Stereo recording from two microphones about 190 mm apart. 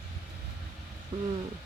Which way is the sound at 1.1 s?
25° right (ahead or behind).